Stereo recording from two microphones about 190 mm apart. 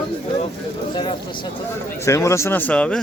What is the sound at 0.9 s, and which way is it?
A man's voice, 25° left (ahead or behind).